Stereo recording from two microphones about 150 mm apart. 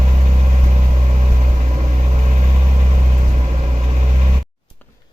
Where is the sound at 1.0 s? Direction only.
45° right (ahead or behind).